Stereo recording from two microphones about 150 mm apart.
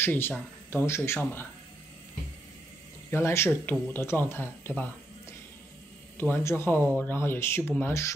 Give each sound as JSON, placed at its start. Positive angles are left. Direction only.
{"t": 0.0, "sound": "a man's voice", "side_deg": 15}
{"t": 3.1, "sound": "a man's voice", "side_deg": 15}
{"t": 6.1, "sound": "a man's voice", "side_deg": 15}